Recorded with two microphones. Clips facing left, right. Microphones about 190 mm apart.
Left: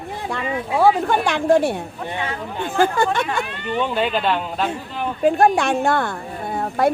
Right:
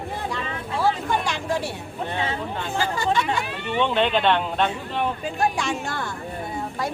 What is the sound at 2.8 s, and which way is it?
Speech, 55° left (ahead or behind).